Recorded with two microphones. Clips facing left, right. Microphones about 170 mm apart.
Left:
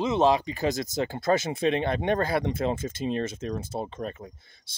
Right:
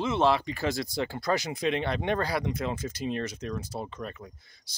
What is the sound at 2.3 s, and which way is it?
Speech, 30° left (ahead or behind).